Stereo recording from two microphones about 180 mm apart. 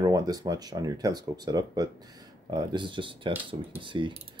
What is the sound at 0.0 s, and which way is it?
Speech, 20° right (ahead or behind).